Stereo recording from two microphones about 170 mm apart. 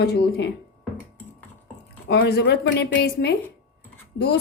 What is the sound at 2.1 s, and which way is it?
A woman's voice, 70° left (ahead or behind).